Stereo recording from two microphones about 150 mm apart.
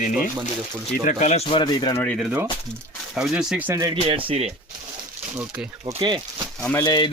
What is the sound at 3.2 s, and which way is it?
Speech, 5° right (ahead or behind).